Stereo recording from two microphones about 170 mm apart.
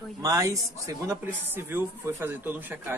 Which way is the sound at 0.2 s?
20° right (ahead or behind).